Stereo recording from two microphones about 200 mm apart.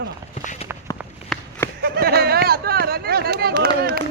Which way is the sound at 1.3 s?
5° left (ahead or behind).